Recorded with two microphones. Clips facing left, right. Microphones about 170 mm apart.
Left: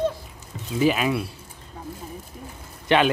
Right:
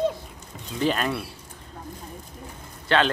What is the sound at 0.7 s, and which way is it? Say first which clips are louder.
Speech: left 4 dB; 5° left (ahead or behind).